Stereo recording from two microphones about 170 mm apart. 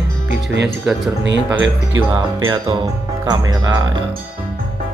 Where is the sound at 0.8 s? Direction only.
Centre (ahead or behind).